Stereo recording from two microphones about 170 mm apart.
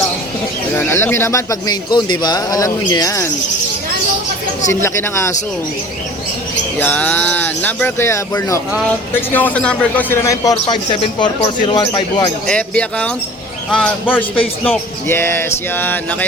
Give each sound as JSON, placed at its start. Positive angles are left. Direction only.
{"t": 0.8, "sound": "speech", "side_deg": 15}
{"t": 4.7, "sound": "speech", "side_deg": 15}
{"t": 6.7, "sound": "speech", "side_deg": 10}
{"t": 10.7, "sound": "speech", "side_deg": 30}
{"t": 12.5, "sound": "speech", "side_deg": 5}